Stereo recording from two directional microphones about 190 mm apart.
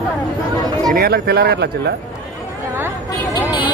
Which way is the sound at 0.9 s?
55° right (ahead or behind).